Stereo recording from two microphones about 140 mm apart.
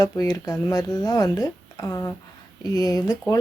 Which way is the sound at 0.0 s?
25° left (ahead or behind).